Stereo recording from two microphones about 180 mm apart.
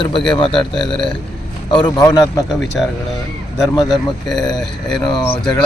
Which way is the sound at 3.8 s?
Centre (ahead or behind).